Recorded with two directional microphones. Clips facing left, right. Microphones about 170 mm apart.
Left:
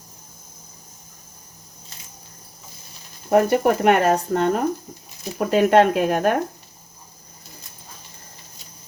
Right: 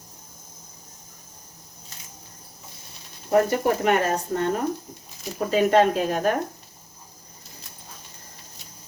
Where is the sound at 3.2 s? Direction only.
60° left (ahead or behind).